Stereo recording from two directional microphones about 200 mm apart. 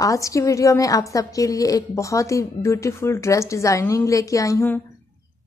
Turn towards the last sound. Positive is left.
turn(degrees=15)  # may be behind; listen again after turning